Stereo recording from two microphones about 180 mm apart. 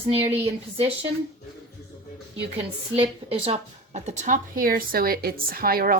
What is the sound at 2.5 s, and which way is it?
A woman's voice, 30° right (ahead or behind).